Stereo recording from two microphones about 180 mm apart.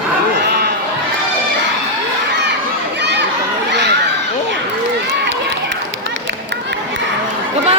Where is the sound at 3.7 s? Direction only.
70° right (ahead or behind).